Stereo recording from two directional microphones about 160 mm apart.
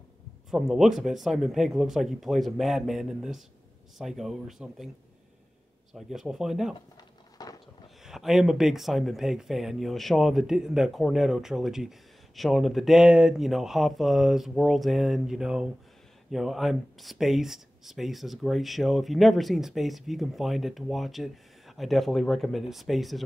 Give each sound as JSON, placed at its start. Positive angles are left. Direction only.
{"t": 0.5, "sound": "speech", "side_deg": 0}
{"t": 5.9, "sound": "speech", "side_deg": 0}
{"t": 7.3, "sound": "a sound", "side_deg": 25}
{"t": 8.0, "sound": "speech", "side_deg": 0}